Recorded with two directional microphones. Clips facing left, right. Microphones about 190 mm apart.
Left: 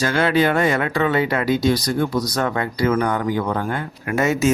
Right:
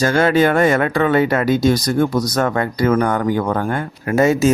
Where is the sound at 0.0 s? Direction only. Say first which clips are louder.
Right 4 dB; 45° right (ahead or behind).